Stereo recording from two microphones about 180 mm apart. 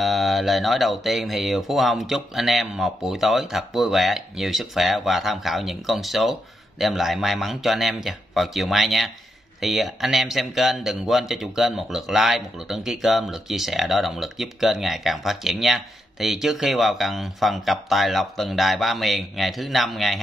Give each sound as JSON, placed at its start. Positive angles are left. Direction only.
{"t": 0.0, "sound": "speech", "side_deg": 0}